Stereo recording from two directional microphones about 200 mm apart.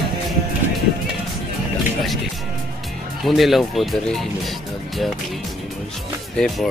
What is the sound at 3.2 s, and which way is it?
Speech, centre (ahead or behind).